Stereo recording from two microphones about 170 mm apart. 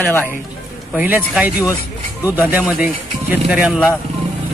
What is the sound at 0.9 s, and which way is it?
Speech, 10° right (ahead or behind).